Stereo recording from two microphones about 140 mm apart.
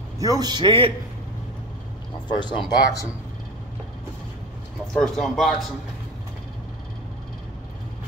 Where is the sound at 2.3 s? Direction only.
35° left (ahead or behind).